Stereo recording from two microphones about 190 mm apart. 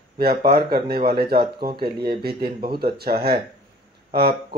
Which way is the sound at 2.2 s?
55° right (ahead or behind).